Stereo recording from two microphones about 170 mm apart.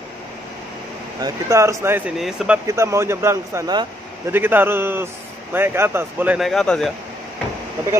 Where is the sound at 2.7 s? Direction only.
15° right (ahead or behind); by 6.9 s centre (ahead or behind).